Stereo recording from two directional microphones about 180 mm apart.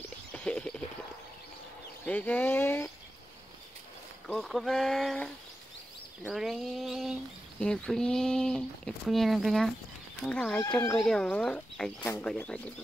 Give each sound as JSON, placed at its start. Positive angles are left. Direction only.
{"t": 0.3, "sound": "a sound", "side_deg": 5}
{"t": 2.0, "sound": "speech", "side_deg": 10}
{"t": 4.3, "sound": "speech", "side_deg": 0}
{"t": 11.0, "sound": "speech", "side_deg": 5}